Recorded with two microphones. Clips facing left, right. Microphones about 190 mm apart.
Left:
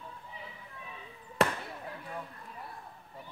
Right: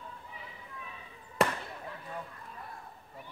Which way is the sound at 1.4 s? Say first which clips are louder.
Even; centre (ahead or behind).